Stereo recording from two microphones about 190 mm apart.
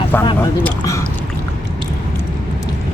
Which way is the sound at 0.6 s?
15° left (ahead or behind).